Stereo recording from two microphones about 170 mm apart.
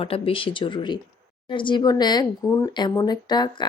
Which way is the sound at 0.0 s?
30° left (ahead or behind).